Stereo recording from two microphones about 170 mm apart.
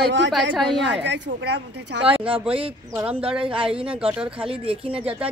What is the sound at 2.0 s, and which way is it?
Speech, 30° right (ahead or behind).